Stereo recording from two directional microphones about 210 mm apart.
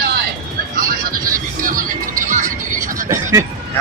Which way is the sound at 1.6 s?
40° right (ahead or behind).